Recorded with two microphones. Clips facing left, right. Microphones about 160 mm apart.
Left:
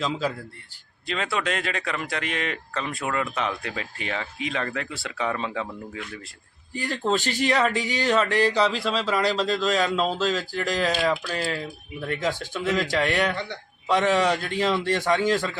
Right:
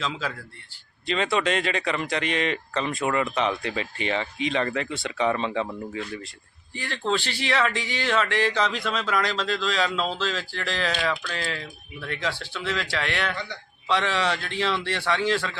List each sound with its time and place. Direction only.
0.0 s speech: 40° left (ahead or behind)
1.0 s speech: centre (ahead or behind)
6.7 s a man's voice: 45° left (ahead or behind)
12.0 s a man's voice: 45° left (ahead or behind)